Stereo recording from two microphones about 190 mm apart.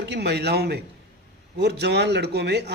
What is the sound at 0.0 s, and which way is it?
A man's voice, 60° right (ahead or behind).